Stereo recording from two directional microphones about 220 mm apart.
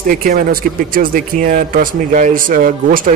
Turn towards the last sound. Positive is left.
turn(degrees=-40)  # may be behind; listen again after turning